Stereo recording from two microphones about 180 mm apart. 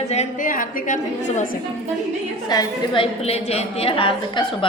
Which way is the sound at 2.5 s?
25° left (ahead or behind).